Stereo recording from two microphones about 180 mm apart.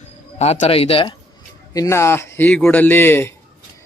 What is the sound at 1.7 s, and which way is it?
A man's voice, 15° left (ahead or behind).